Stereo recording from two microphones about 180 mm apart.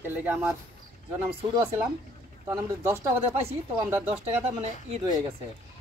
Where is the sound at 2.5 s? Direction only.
15° right (ahead or behind).